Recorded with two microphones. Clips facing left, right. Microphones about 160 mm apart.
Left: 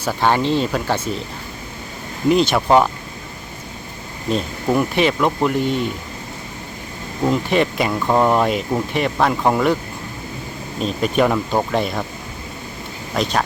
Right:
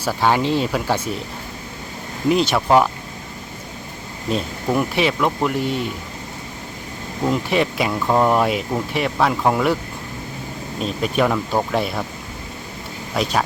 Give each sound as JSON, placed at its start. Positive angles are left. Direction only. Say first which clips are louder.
{"t": 0.0, "sound": "speech", "louder": "left 1 dB", "side_deg": -5}
{"t": 2.3, "sound": "speech", "louder": "left 1 dB", "side_deg": 0}
{"t": 4.3, "sound": "speech", "louder": "left 2 dB", "side_deg": -5}
{"t": 7.3, "sound": "speech", "louder": "left 2 dB", "side_deg": -5}
{"t": 10.8, "sound": "speech", "louder": "left 2 dB", "side_deg": 0}
{"t": 13.1, "sound": "speech", "louder": "left 1 dB", "side_deg": -5}